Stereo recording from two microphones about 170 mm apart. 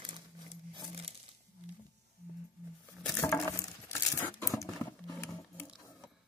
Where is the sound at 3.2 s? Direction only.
5° left (ahead or behind).